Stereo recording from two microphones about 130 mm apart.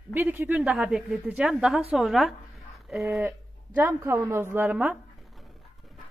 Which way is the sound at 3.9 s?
20° right (ahead or behind).